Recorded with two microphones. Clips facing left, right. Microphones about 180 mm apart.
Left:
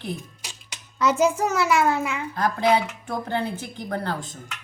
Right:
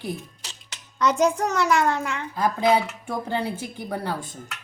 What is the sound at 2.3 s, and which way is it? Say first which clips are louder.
A woman's voice: right 1 dB; 10° right (ahead or behind).